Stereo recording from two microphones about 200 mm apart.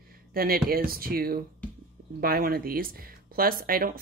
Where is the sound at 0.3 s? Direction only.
45° right (ahead or behind).